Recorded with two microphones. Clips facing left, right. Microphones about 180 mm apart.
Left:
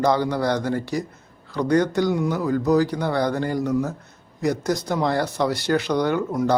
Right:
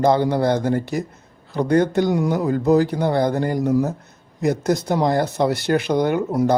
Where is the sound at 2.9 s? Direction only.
25° right (ahead or behind).